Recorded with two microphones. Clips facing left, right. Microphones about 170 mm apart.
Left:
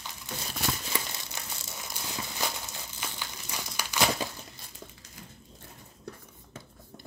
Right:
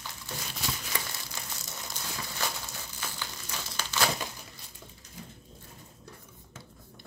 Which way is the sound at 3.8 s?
15° left (ahead or behind).